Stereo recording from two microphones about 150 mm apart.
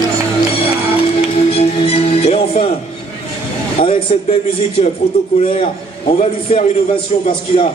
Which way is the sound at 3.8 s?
40° left (ahead or behind).